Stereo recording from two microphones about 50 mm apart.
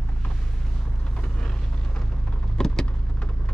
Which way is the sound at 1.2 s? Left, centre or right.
Centre.